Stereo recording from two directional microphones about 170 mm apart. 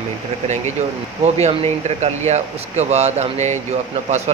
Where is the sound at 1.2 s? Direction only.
40° right (ahead or behind).